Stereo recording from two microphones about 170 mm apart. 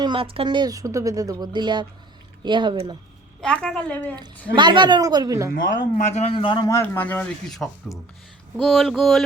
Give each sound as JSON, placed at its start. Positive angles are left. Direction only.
{"t": 0.0, "sound": "speech", "side_deg": -30}
{"t": 3.4, "sound": "a woman's voice", "side_deg": 5}
{"t": 4.5, "sound": "speech", "side_deg": -25}
{"t": 6.0, "sound": "a man's voice", "side_deg": 40}
{"t": 7.9, "sound": "a man's voice", "side_deg": 15}
{"t": 8.5, "sound": "a woman's voice", "side_deg": 0}